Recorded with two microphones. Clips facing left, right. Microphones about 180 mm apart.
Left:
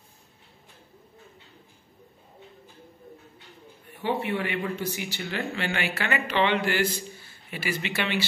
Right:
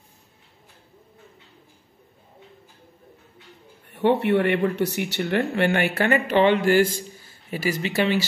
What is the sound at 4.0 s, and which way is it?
Speech, 65° right (ahead or behind).